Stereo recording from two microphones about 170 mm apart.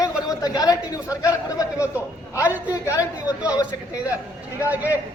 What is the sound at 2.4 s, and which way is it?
Speech, 10° right (ahead or behind).